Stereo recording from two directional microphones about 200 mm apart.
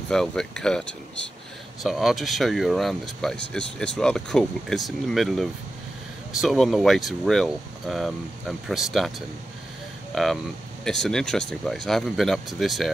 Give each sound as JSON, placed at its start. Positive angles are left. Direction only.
{"t": 0.1, "sound": "speech", "side_deg": 5}
{"t": 10.1, "sound": "speech", "side_deg": 0}